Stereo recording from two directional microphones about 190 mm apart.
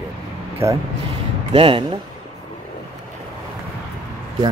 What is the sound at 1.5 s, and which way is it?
Speech, 30° right (ahead or behind).